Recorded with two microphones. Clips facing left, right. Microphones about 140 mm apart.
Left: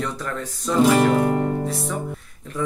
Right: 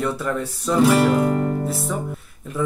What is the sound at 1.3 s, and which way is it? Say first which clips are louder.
Music: even; 10° left (ahead or behind).